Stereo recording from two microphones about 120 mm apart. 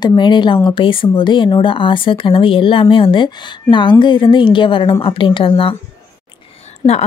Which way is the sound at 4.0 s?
40° left (ahead or behind).